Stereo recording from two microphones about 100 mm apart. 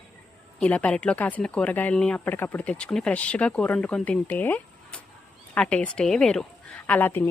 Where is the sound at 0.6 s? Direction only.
15° left (ahead or behind).